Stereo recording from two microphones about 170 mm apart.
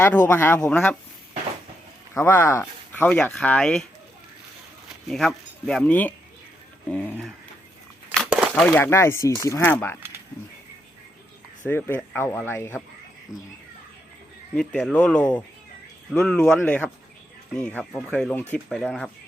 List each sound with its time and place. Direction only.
0.0 s speech: 10° left (ahead or behind)
2.1 s speech: 10° left (ahead or behind)
5.0 s speech: centre (ahead or behind)
8.1 s a sound: 5° right (ahead or behind)
8.6 s speech: 10° left (ahead or behind)
11.7 s speech: 10° left (ahead or behind)
14.5 s speech: 5° left (ahead or behind)